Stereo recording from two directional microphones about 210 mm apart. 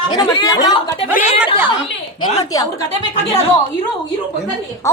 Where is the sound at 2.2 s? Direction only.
20° left (ahead or behind).